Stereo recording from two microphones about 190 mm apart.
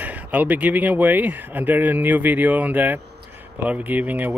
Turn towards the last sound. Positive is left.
turn(degrees=-10)  # may be behind; listen again after turning